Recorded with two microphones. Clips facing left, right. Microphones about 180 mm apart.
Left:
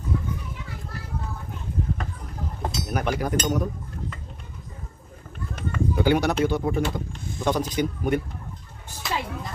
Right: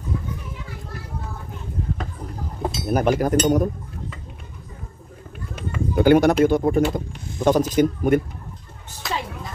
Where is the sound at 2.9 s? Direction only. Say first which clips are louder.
Right 7 dB; 40° right (ahead or behind).